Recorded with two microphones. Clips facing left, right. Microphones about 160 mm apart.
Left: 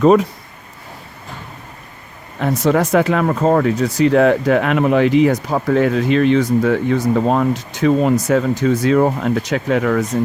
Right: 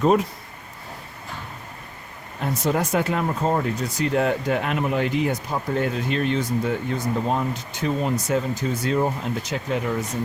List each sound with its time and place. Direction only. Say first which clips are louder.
2.4 s speech: left 8 dB; 85° left